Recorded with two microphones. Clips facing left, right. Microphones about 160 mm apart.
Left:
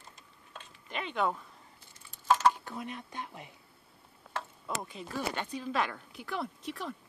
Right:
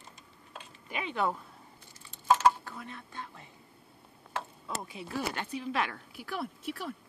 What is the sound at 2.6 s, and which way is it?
Speech, 20° left (ahead or behind).